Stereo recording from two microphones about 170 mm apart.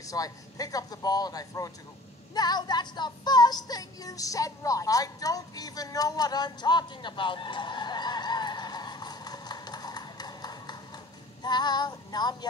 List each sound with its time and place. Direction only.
0.0 s speech: 20° left (ahead or behind)
2.3 s music: 25° left (ahead or behind)
11.4 s speech: 25° left (ahead or behind)